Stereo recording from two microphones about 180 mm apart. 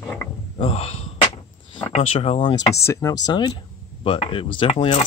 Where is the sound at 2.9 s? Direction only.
15° left (ahead or behind).